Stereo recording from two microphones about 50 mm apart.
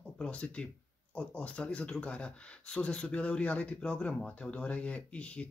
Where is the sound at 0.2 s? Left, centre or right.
Left.